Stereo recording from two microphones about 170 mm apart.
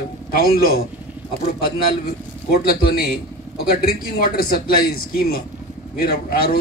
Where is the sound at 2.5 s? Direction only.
65° left (ahead or behind).